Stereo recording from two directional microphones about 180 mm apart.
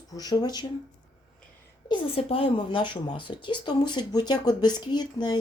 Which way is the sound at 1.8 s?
30° left (ahead or behind).